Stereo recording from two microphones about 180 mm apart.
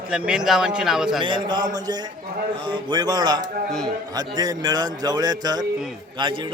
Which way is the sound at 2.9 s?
25° right (ahead or behind).